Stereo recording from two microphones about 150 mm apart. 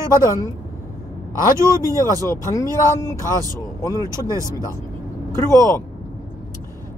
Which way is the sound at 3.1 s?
25° right (ahead or behind).